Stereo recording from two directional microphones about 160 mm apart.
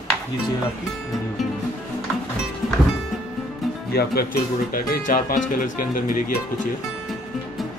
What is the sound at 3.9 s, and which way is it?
Speech, 75° left (ahead or behind).